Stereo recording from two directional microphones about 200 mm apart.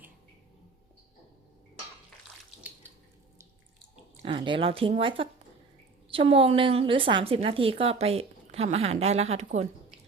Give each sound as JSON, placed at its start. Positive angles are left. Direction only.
{"t": 4.2, "sound": "a woman's voice", "side_deg": -25}